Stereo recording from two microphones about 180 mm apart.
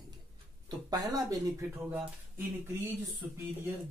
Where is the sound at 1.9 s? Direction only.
10° right (ahead or behind).